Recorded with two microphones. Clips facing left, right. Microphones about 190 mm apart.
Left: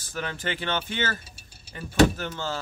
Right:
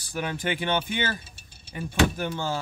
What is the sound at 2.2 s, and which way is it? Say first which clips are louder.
Mechanisms: right 3 dB; 15° right (ahead or behind).